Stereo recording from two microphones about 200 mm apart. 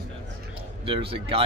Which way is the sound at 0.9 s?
25° right (ahead or behind).